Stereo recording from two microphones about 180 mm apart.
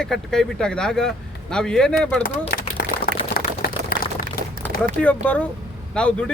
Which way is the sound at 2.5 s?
55° left (ahead or behind).